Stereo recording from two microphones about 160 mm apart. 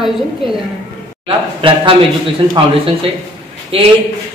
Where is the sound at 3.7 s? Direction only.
40° right (ahead or behind).